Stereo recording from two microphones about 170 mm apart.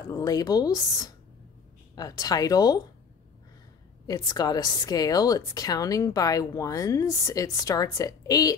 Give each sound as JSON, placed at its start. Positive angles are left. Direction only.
{"t": 0.1, "sound": "a woman's voice", "side_deg": 20}
{"t": 4.1, "sound": "a woman's voice", "side_deg": 20}